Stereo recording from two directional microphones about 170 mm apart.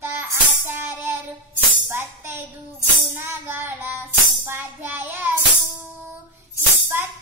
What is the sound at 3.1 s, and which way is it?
Child singing, 15° right (ahead or behind).